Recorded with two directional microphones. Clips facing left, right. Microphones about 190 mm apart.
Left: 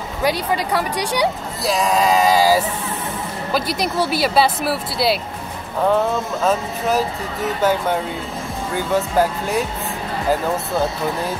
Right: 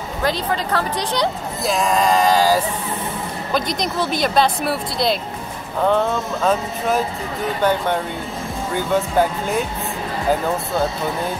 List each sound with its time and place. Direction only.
0.2 s speech: 10° left (ahead or behind)
1.6 s speech: centre (ahead or behind)